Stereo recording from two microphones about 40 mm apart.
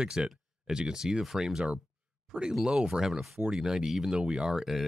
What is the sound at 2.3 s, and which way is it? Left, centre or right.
Speech, centre.